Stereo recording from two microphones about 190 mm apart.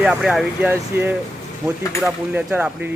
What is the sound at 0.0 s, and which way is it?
Speech, 5° right (ahead or behind).